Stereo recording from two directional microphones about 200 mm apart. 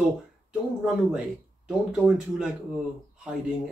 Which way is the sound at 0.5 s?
5° right (ahead or behind).